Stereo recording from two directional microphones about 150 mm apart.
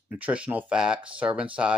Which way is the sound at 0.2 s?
10° right (ahead or behind).